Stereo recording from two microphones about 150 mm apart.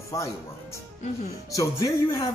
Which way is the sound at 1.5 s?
20° left (ahead or behind).